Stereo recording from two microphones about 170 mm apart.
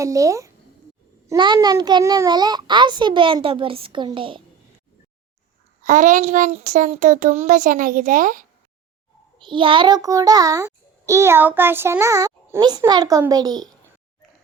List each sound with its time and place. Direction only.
0.0 s a child's voice: 20° right (ahead or behind)
5.8 s a child's voice: 45° right (ahead or behind)
9.4 s a child's voice: 30° right (ahead or behind)